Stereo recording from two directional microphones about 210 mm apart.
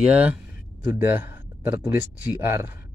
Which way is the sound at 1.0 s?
10° right (ahead or behind).